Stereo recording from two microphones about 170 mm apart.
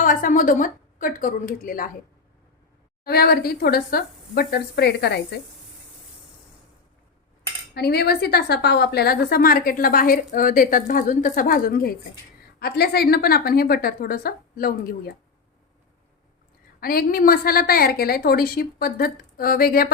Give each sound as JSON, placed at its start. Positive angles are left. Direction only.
{"t": 0.0, "sound": "a woman's voice", "side_deg": 55}
{"t": 3.0, "sound": "a woman's voice", "side_deg": 65}
{"t": 7.7, "sound": "a woman's voice", "side_deg": 70}
{"t": 16.8, "sound": "a woman's voice", "side_deg": 60}